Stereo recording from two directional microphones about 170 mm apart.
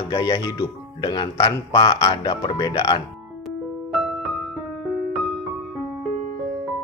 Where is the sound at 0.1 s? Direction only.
30° left (ahead or behind).